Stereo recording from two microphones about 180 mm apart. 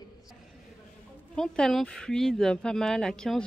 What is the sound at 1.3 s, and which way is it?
Speech, 5° left (ahead or behind).